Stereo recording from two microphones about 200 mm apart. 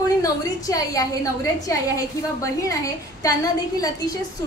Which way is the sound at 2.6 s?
15° left (ahead or behind).